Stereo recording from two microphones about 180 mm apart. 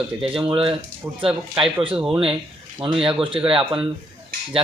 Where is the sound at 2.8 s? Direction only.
30° right (ahead or behind).